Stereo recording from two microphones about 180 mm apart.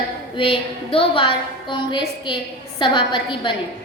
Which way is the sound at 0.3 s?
30° left (ahead or behind).